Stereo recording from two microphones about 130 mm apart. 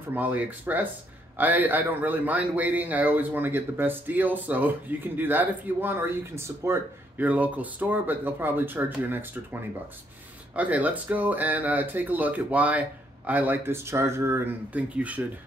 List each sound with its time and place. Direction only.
0.1 s speech: 15° right (ahead or behind)